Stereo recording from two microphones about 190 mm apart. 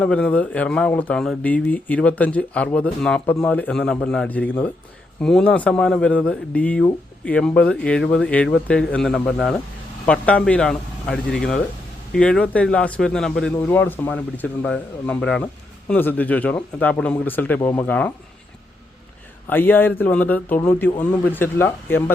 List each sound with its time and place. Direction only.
0.0 s speech: 5° left (ahead or behind)
19.5 s speech: 10° left (ahead or behind)